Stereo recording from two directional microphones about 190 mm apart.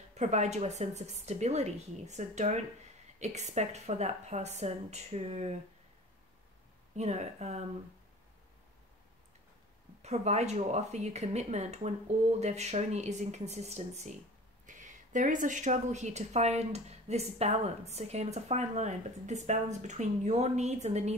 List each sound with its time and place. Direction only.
0.1 s a woman's voice: 35° right (ahead or behind)
7.0 s a woman's voice: 35° right (ahead or behind)
10.0 s a woman's voice: 35° right (ahead or behind)